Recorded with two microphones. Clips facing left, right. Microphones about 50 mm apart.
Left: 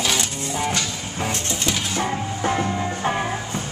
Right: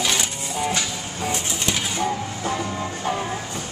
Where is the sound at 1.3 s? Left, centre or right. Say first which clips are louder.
Right 1 dB; centre.